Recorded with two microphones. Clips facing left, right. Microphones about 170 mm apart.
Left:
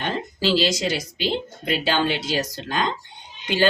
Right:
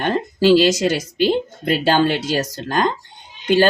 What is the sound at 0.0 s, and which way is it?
Speech, 50° right (ahead or behind).